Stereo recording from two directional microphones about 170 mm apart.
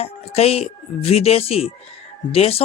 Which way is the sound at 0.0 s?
35° left (ahead or behind).